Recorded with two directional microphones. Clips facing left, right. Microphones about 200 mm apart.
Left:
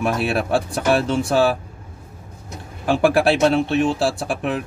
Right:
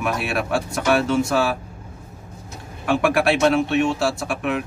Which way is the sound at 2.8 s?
30° left (ahead or behind).